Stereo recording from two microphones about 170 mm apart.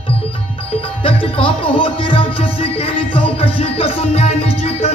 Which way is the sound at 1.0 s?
30° left (ahead or behind).